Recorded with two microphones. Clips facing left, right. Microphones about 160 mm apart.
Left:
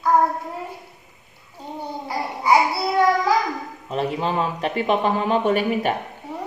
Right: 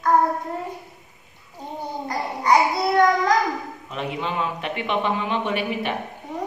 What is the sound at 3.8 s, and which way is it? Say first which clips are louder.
A man's voice: left 6 dB; 35° left (ahead or behind).